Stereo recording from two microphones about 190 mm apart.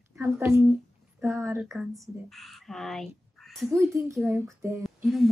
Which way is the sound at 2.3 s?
Centre (ahead or behind).